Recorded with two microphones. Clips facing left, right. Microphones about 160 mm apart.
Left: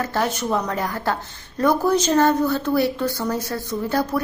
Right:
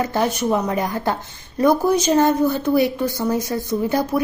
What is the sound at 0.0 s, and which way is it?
A woman's voice, 15° right (ahead or behind).